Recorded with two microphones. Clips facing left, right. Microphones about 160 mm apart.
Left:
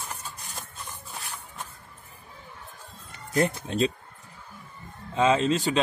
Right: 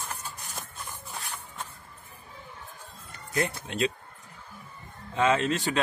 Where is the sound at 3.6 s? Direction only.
30° left (ahead or behind).